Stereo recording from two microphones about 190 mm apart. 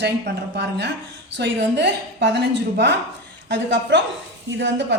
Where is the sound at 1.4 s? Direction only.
65° right (ahead or behind).